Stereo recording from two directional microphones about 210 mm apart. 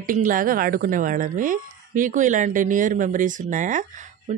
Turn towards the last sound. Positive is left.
turn(degrees=-35)  # may be behind; listen again after turning